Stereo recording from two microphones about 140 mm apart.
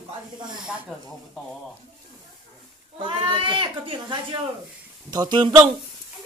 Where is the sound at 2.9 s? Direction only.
35° right (ahead or behind).